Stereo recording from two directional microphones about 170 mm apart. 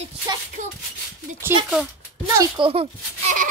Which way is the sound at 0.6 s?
45° right (ahead or behind).